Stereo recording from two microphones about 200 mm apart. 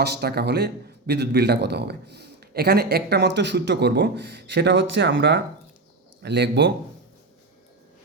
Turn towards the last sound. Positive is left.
turn(degrees=-55)  # may be behind; listen again after turning